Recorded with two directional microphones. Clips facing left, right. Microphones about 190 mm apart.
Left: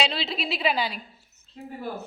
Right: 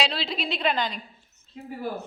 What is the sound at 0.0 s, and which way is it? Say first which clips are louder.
A woman's voice: even; centre (ahead or behind).